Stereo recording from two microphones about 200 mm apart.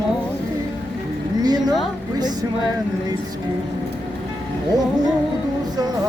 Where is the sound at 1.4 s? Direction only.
20° right (ahead or behind).